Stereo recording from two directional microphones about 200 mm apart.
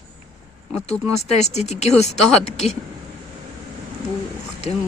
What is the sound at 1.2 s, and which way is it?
Speech, 35° left (ahead or behind).